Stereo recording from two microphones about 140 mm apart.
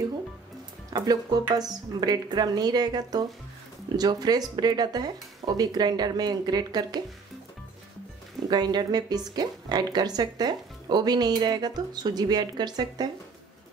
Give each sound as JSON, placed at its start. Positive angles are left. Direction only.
{"t": 0.9, "sound": "speech", "side_deg": -30}
{"t": 8.5, "sound": "speech", "side_deg": -30}